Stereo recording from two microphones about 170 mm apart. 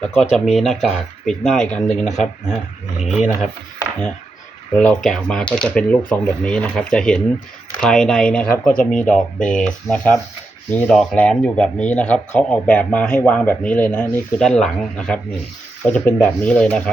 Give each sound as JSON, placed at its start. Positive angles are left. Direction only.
{"t": 0.0, "sound": "speech", "side_deg": 5}
{"t": 2.0, "sound": "speech", "side_deg": 45}
{"t": 4.8, "sound": "speech", "side_deg": 0}